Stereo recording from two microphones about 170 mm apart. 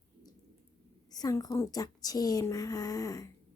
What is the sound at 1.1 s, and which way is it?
A woman's voice, 20° left (ahead or behind).